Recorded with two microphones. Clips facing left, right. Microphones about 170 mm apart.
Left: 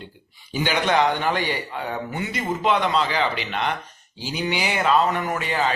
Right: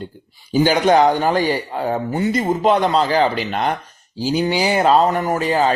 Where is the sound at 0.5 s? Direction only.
40° right (ahead or behind).